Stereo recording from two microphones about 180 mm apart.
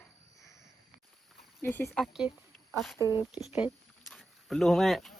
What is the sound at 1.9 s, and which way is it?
Speech, centre (ahead or behind).